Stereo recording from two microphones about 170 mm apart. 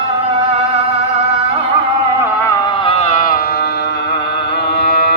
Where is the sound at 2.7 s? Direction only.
35° left (ahead or behind); by 5.0 s 75° left (ahead or behind).